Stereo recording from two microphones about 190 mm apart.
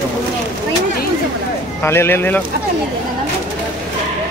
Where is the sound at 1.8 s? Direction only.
10° left (ahead or behind).